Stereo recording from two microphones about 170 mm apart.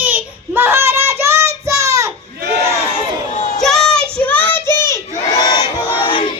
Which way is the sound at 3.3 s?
45° left (ahead or behind).